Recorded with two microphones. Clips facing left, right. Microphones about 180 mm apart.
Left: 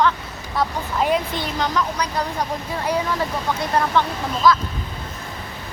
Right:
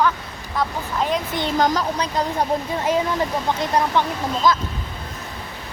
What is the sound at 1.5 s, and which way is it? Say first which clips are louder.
Speech: right 5 dB; 45° right (ahead or behind).